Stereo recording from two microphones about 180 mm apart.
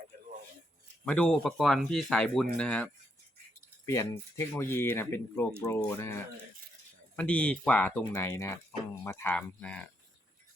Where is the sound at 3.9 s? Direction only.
15° left (ahead or behind).